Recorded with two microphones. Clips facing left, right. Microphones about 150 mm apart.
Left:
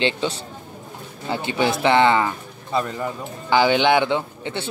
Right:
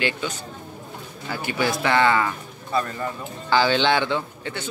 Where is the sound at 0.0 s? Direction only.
25° left (ahead or behind).